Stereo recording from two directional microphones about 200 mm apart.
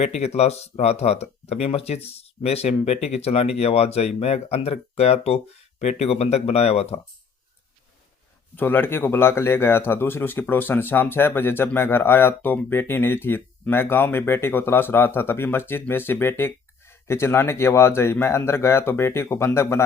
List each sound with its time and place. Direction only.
0.0 s speech: 35° left (ahead or behind)
8.5 s speech: 10° left (ahead or behind)